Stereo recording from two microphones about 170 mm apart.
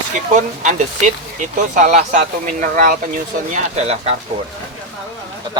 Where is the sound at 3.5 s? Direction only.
40° right (ahead or behind).